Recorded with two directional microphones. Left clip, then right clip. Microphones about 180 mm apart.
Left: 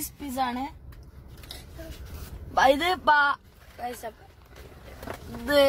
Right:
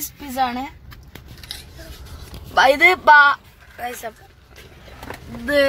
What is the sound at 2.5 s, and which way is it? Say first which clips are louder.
Speech: right 8 dB; 15° right (ahead or behind).